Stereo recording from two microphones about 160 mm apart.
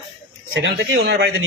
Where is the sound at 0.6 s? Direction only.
90° right.